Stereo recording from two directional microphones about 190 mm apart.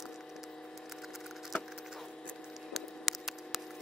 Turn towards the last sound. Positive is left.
turn(degrees=0)  # may be behind; listen again after turning